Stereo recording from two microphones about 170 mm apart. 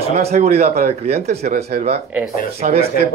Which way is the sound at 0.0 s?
40° right (ahead or behind).